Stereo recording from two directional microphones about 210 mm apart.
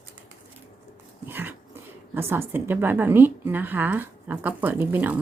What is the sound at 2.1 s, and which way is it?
A woman's voice, 10° right (ahead or behind).